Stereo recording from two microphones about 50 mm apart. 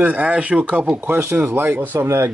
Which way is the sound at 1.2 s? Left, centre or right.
Right.